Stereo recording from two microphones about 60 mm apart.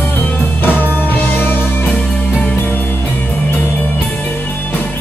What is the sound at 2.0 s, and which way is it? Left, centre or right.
Music, left.